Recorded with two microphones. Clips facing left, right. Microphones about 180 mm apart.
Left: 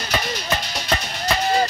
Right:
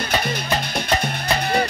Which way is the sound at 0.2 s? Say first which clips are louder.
Right 2 dB; 55° right (ahead or behind).